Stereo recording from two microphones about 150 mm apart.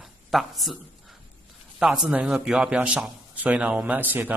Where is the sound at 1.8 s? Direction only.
5° right (ahead or behind).